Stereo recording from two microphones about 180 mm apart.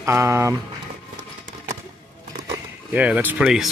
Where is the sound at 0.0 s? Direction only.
15° right (ahead or behind).